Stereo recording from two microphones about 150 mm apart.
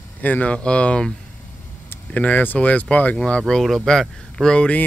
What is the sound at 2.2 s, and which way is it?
Speech, 10° left (ahead or behind).